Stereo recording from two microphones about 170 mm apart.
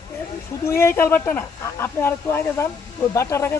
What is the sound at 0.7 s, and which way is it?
Speech, 15° left (ahead or behind).